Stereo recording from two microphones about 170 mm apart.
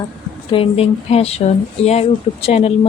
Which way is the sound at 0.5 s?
35° left (ahead or behind).